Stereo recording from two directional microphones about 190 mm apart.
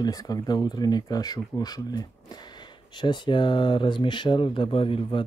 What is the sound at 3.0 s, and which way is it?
Speech, 25° left (ahead or behind).